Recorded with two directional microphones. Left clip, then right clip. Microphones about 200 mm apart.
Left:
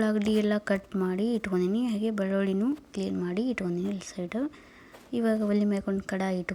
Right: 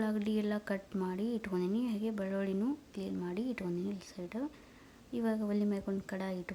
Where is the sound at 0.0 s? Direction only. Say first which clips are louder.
Left 9 dB; 20° left (ahead or behind).